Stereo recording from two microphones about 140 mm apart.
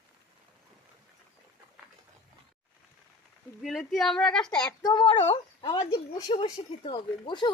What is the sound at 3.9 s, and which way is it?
Speech, centre (ahead or behind).